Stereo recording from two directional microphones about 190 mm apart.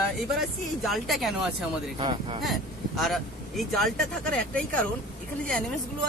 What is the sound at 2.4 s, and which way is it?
Speech, centre (ahead or behind).